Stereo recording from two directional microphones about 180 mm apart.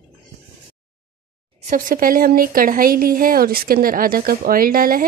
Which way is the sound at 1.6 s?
50° right (ahead or behind).